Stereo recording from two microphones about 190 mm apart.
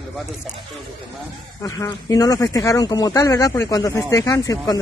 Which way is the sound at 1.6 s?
20° left (ahead or behind).